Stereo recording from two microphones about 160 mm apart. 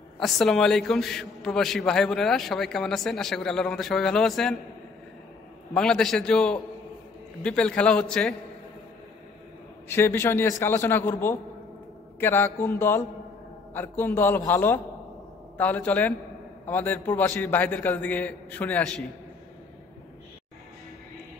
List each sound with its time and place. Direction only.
0.2 s a man's voice: centre (ahead or behind)
5.8 s a man's voice: 5° left (ahead or behind)
9.8 s a man's voice: 15° left (ahead or behind)